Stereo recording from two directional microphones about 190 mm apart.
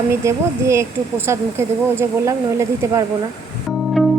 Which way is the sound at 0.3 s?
15° right (ahead or behind).